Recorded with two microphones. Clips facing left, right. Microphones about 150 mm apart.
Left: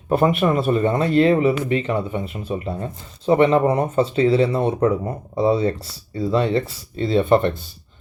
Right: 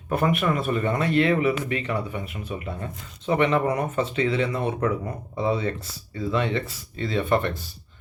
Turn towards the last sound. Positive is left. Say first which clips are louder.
# left 7 dB
turn(degrees=25)  # may be behind; listen again after turning